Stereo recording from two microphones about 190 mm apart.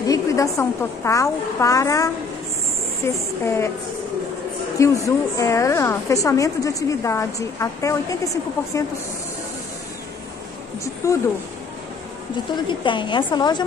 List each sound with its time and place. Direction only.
0.0 s a woman's voice: 15° left (ahead or behind)
4.7 s a woman's voice: 15° left (ahead or behind)
11.0 s a woman's voice: 15° left (ahead or behind)
12.5 s a woman's voice: 25° left (ahead or behind)